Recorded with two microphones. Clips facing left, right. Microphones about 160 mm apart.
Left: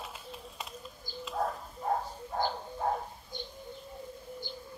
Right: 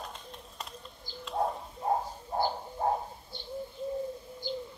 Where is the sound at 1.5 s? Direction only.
25° right (ahead or behind).